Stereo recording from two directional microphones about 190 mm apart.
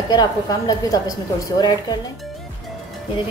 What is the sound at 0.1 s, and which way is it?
A woman's voice, 20° left (ahead or behind).